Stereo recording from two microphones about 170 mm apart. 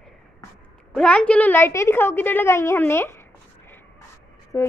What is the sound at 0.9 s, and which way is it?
A woman's voice, 5° left (ahead or behind).